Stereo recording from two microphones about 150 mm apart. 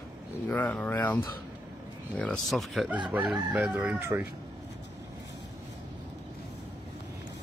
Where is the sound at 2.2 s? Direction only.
5° left (ahead or behind).